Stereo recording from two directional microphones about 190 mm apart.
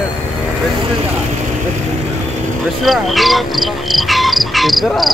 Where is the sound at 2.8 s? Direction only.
Centre (ahead or behind).